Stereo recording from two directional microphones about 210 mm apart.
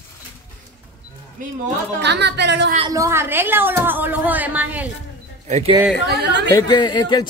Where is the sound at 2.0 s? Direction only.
55° right (ahead or behind).